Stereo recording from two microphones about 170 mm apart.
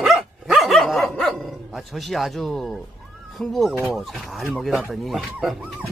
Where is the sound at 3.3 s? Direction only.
Centre (ahead or behind).